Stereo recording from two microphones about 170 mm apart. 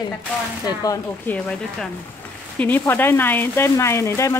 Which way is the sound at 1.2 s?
10° left (ahead or behind).